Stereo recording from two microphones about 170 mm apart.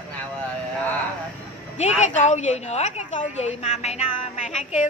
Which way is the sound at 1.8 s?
45° left (ahead or behind).